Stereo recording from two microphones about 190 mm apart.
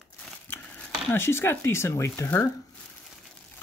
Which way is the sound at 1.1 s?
15° left (ahead or behind).